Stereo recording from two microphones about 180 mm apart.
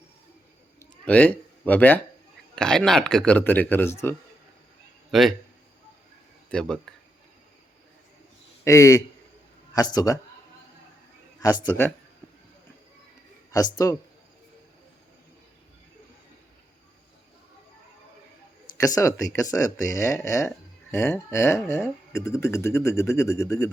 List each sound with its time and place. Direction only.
0.8 s a sound: 10° left (ahead or behind)
2.6 s speech: 5° left (ahead or behind)
5.1 s speech: centre (ahead or behind)
6.5 s speech: 5° left (ahead or behind)
8.6 s a man's voice: 15° left (ahead or behind)
11.3 s speech: 20° left (ahead or behind)
13.7 s a man's voice: 20° left (ahead or behind)
18.8 s speech: 20° left (ahead or behind)